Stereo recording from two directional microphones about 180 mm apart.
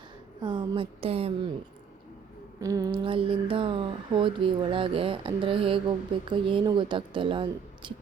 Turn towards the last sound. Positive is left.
turn(degrees=-25)  # may be behind; listen again after turning